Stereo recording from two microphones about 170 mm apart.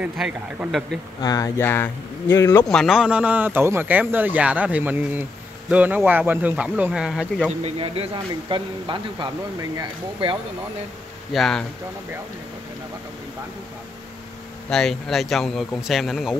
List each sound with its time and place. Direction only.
0.0 s speech: 10° right (ahead or behind)
1.2 s speech: 20° left (ahead or behind)
2.7 s speech: centre (ahead or behind)
7.6 s speech: 35° right (ahead or behind)
11.3 s speech: centre (ahead or behind)
14.7 s speech: centre (ahead or behind)